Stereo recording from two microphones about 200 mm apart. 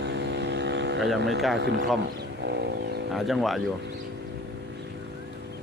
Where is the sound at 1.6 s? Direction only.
60° right (ahead or behind).